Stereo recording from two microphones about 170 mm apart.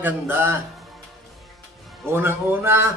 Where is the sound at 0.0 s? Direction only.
10° right (ahead or behind).